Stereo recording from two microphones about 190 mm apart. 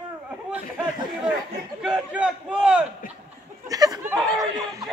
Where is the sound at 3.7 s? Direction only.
20° right (ahead or behind).